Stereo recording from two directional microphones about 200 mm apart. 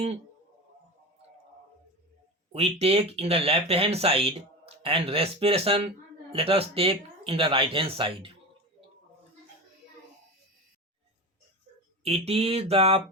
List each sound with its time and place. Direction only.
2.5 s speech: 30° right (ahead or behind)
12.0 s speech: 30° right (ahead or behind)